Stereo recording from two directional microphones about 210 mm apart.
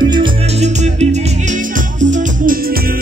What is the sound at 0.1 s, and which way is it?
Music, 25° right (ahead or behind).